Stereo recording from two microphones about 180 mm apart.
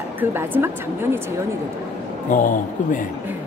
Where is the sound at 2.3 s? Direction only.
45° left (ahead or behind).